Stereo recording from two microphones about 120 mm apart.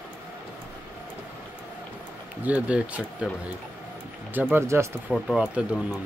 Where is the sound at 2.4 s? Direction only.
10° right (ahead or behind).